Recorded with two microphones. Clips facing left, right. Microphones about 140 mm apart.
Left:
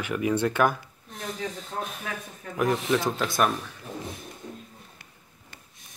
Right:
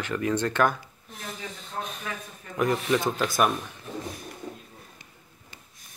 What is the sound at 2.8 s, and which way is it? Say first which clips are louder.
Speech: even; centre (ahead or behind).